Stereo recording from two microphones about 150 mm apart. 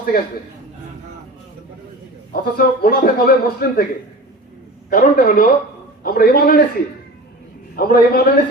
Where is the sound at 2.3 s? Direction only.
85° left.